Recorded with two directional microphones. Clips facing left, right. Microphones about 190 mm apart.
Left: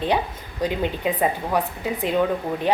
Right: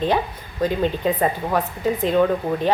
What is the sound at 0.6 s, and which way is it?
A woman's voice, 15° left (ahead or behind).